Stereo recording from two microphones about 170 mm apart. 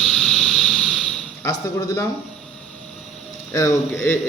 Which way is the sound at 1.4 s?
20° left (ahead or behind).